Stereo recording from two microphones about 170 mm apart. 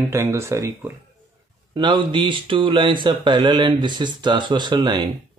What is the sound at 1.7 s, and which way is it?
Speech, 30° right (ahead or behind).